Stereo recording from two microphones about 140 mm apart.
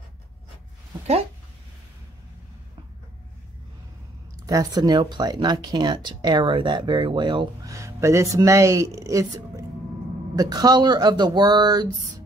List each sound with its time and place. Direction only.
4.5 s speech: 25° right (ahead or behind)